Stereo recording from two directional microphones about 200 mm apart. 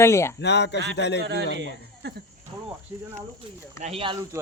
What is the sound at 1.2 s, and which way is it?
Speech, 60° right (ahead or behind).